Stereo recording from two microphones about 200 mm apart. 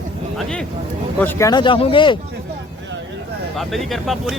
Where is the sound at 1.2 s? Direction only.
10° left (ahead or behind).